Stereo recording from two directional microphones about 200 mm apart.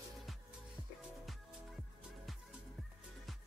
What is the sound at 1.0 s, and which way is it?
Music, centre (ahead or behind).